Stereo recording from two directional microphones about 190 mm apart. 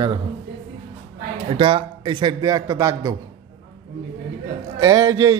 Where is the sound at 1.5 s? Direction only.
25° right (ahead or behind).